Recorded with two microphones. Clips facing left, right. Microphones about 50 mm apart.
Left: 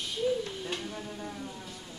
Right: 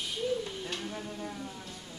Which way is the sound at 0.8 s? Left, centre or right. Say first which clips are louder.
Even; centre.